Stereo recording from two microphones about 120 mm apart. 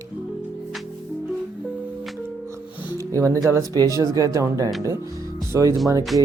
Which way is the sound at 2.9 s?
25° right (ahead or behind).